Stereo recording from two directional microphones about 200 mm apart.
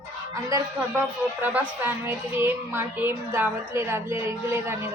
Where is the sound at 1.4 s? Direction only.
10° right (ahead or behind).